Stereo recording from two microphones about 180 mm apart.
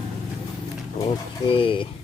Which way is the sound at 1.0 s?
30° left (ahead or behind).